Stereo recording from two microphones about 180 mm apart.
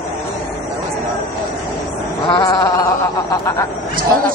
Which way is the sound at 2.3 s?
20° left (ahead or behind).